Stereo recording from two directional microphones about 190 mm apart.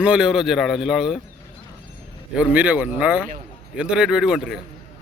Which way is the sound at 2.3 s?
5° right (ahead or behind).